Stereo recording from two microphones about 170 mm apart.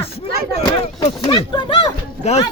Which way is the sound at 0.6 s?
30° left (ahead or behind).